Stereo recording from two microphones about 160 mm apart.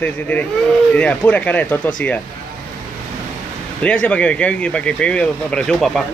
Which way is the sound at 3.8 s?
5° left (ahead or behind).